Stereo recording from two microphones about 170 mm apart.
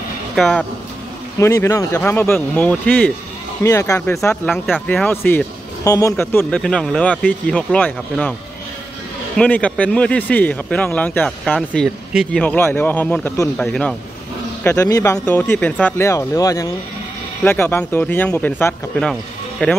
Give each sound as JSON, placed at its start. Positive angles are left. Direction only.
{"t": 0.4, "sound": "speech", "side_deg": 5}
{"t": 1.4, "sound": "speech", "side_deg": 15}
{"t": 3.6, "sound": "speech", "side_deg": 20}
{"t": 9.4, "sound": "speech", "side_deg": 5}
{"t": 11.2, "sound": "speech", "side_deg": 0}
{"t": 14.6, "sound": "speech", "side_deg": 20}
{"t": 15.1, "sound": "speech", "side_deg": 10}